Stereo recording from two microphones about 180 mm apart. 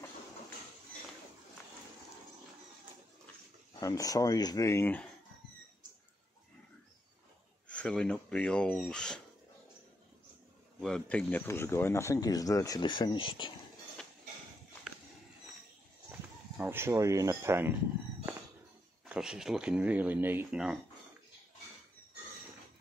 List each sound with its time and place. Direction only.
3.8 s speech: 20° left (ahead or behind)
7.6 s speech: 5° left (ahead or behind)
10.8 s speech: 5° left (ahead or behind); by 13.5 s 25° left (ahead or behind)
16.1 s speech: 10° right (ahead or behind)
19.0 s speech: 5° right (ahead or behind)